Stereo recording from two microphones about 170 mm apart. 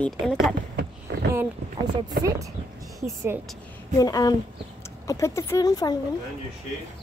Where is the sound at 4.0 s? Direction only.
20° left (ahead or behind).